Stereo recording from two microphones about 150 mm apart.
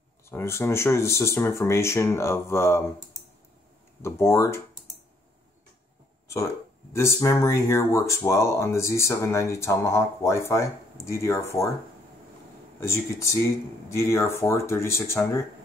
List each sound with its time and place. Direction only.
0.3 s speech: 15° left (ahead or behind)
4.0 s speech: 20° left (ahead or behind)
6.9 s speech: 20° left (ahead or behind)
12.8 s speech: 20° left (ahead or behind)